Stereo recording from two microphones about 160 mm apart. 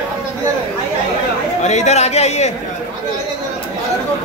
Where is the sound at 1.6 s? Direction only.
45° left (ahead or behind).